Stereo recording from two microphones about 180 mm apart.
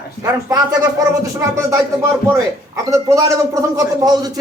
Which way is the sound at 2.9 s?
15° right (ahead or behind).